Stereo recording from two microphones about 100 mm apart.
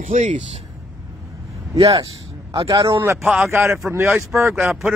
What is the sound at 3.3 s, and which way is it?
Speech, 25° right (ahead or behind).